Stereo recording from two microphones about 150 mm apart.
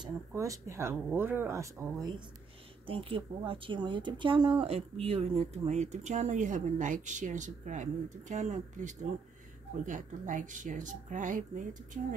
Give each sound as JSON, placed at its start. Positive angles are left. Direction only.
{"t": 0.3, "sound": "speech", "side_deg": -20}
{"t": 2.9, "sound": "speech", "side_deg": -40}